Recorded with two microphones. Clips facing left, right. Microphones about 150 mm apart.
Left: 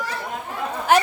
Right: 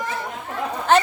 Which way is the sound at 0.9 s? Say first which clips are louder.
Right 1 dB; 10° left (ahead or behind).